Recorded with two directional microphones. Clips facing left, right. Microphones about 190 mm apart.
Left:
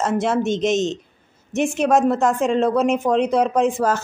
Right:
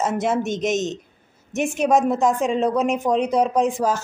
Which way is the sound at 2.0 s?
15° right (ahead or behind).